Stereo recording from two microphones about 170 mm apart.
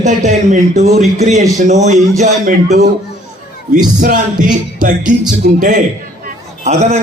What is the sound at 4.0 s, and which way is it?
A man's voice, 50° right (ahead or behind).